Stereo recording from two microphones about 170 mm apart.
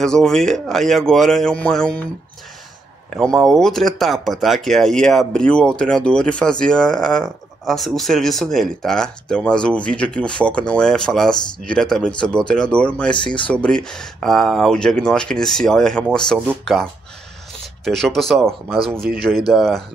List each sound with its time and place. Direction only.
0.0 s speech: 5° left (ahead or behind)
3.2 s speech: centre (ahead or behind)
17.8 s speech: centre (ahead or behind)